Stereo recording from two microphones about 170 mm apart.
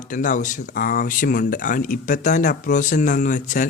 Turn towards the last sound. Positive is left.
turn(degrees=50)  # may be behind; listen again after turning